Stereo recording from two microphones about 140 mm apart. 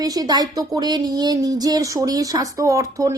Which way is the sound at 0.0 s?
25° right (ahead or behind).